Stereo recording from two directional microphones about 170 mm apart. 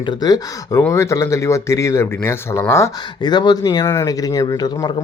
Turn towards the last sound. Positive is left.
turn(degrees=25)  # may be behind; listen again after turning